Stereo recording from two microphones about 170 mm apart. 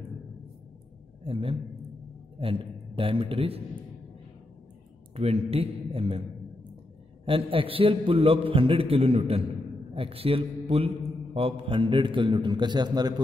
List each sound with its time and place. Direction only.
1.2 s a man's voice: 30° right (ahead or behind)
5.1 s a man's voice: 35° right (ahead or behind)
7.2 s a man's voice: 30° right (ahead or behind)